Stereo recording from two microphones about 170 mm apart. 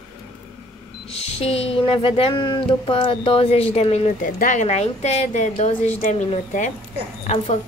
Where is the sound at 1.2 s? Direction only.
35° left (ahead or behind).